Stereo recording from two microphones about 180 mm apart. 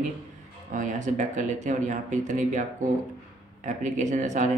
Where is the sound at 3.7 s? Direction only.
40° right (ahead or behind).